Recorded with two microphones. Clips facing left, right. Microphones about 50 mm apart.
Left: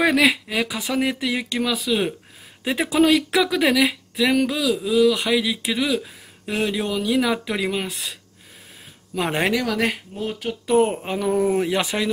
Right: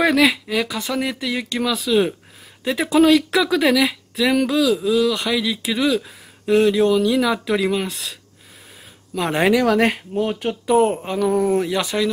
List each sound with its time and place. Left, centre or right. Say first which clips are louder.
0.0 s speech: right 2 dB; centre
2.6 s speech: right 3 dB; centre
9.4 s speech: right 7 dB; centre
10.4 s speech: right 1 dB; centre
11.5 s speech: right 2 dB; left